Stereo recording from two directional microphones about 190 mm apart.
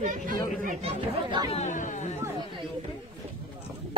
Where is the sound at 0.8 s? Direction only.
25° right (ahead or behind).